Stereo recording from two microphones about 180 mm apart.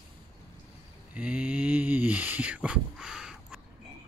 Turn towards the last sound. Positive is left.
turn(degrees=-5)  # may be behind; listen again after turning